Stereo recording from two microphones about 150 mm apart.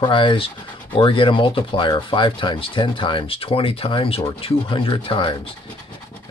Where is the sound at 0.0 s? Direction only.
35° left (ahead or behind).